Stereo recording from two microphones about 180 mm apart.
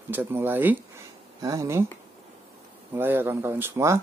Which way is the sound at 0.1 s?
10° right (ahead or behind).